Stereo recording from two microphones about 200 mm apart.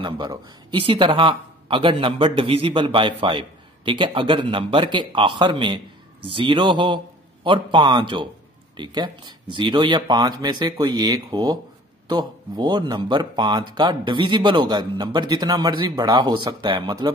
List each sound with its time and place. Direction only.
0.0 s a man's voice: 20° right (ahead or behind)